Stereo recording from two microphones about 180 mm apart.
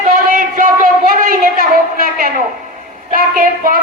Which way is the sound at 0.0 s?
45° right (ahead or behind).